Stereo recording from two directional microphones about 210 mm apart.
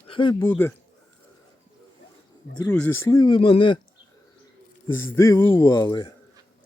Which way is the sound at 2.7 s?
5° left (ahead or behind).